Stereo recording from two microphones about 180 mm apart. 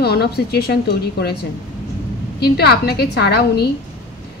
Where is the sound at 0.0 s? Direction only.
60° left (ahead or behind).